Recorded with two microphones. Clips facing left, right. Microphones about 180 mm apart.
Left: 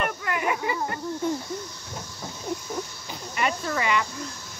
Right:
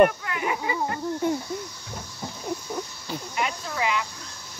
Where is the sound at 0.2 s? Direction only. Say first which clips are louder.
Left 2 dB; 55° left (ahead or behind).